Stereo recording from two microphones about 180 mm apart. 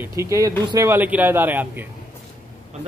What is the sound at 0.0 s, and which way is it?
Speech, 15° right (ahead or behind).